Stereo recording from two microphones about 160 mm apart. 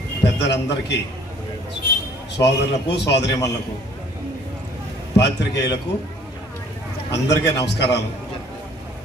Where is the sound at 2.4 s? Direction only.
90° left.